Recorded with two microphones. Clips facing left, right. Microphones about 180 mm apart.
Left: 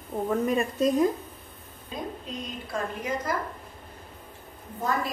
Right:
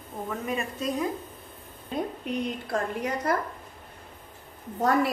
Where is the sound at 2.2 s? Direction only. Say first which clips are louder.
Right 6 dB; 65° right (ahead or behind).